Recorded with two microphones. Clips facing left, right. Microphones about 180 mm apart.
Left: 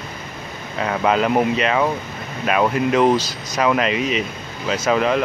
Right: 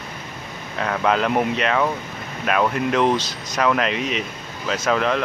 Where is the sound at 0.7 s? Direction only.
5° left (ahead or behind).